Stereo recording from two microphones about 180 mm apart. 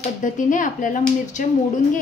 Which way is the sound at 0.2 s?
45° left (ahead or behind).